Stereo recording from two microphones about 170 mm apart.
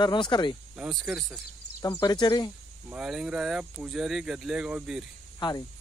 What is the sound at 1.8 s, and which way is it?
Speech, 20° left (ahead or behind).